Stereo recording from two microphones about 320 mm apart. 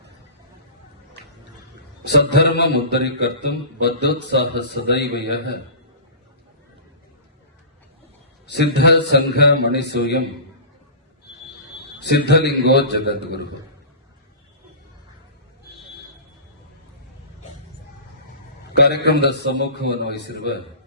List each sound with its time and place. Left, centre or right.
2.0 s a man's voice: left
8.4 s a man's voice: left
12.1 s a man's voice: left
18.7 s a man's voice: left